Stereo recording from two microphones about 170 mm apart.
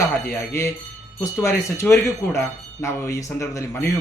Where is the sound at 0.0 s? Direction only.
15° left (ahead or behind).